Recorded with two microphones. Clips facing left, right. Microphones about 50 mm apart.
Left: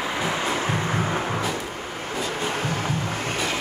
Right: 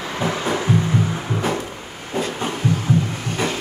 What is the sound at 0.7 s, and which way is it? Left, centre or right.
Music, left.